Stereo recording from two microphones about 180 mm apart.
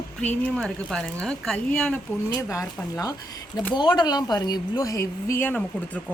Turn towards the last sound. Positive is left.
turn(degrees=10)  # may be behind; listen again after turning